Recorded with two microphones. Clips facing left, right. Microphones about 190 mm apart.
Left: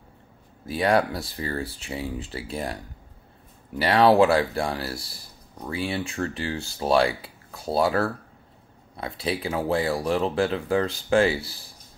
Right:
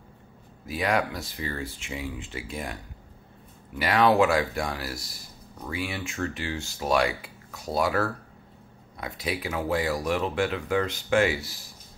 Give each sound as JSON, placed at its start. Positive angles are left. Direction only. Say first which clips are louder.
{"t": 0.7, "sound": "speech", "louder": "left 4 dB", "side_deg": 30}